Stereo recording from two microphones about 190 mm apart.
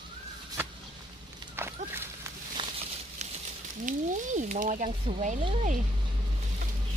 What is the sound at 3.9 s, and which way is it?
Speech, 40° right (ahead or behind).